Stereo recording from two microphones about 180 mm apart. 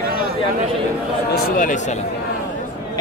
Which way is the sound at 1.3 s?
50° left (ahead or behind).